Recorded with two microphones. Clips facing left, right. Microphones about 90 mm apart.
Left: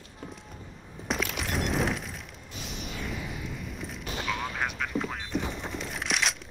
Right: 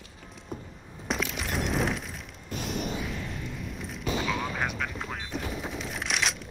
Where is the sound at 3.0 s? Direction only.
5° left (ahead or behind).